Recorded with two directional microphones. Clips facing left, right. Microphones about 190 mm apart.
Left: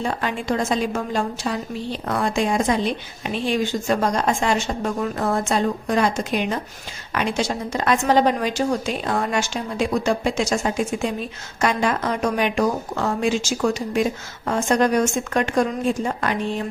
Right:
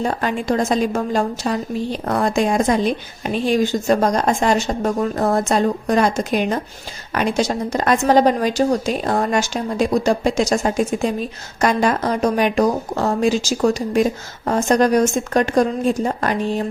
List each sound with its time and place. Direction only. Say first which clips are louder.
0.0 s a woman's voice: right 4 dB; 45° right (ahead or behind)